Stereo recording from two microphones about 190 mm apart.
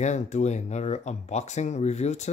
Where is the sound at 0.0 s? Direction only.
40° left (ahead or behind).